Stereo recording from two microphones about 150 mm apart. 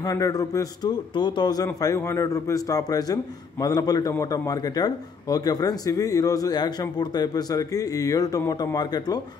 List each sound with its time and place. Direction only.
0.0 s a man's voice: 25° left (ahead or behind)